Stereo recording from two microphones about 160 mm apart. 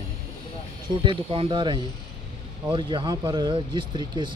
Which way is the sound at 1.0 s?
35° right (ahead or behind).